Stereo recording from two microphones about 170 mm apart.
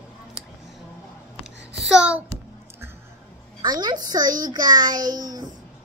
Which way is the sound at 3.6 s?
25° right (ahead or behind).